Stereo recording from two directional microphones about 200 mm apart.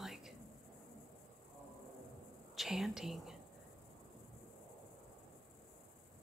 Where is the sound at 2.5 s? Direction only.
Centre (ahead or behind).